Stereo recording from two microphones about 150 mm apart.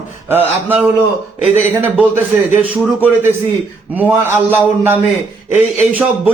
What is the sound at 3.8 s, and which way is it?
Speech, 10° right (ahead or behind).